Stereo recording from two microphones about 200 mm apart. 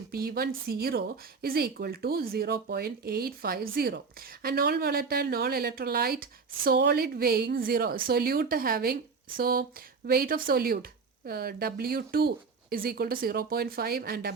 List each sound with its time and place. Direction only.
0.1 s speech: 50° right (ahead or behind)